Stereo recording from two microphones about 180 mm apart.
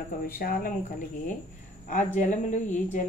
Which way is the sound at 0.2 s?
55° left (ahead or behind).